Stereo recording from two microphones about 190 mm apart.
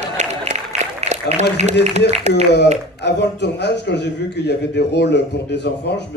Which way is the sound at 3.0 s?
65° left (ahead or behind).